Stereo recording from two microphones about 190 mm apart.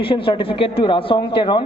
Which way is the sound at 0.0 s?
30° left (ahead or behind).